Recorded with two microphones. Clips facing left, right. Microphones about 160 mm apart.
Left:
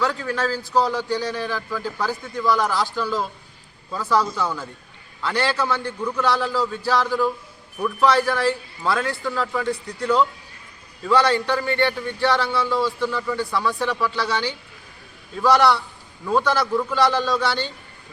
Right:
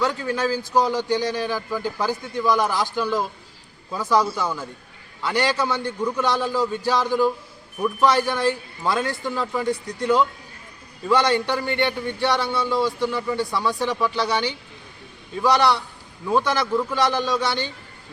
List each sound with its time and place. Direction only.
0.0 s speech: 15° right (ahead or behind)
16.9 s speech: 15° right (ahead or behind)